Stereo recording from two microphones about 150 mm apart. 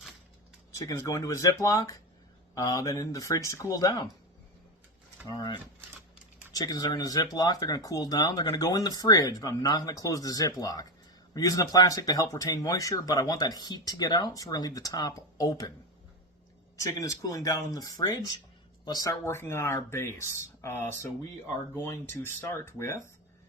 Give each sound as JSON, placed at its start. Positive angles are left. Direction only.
{"t": 0.7, "sound": "speech", "side_deg": 20}
{"t": 5.3, "sound": "speech", "side_deg": 30}
{"t": 16.7, "sound": "speech", "side_deg": 20}